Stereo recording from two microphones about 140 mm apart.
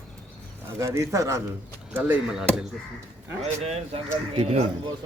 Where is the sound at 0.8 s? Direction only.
20° right (ahead or behind); by 2.6 s 5° right (ahead or behind).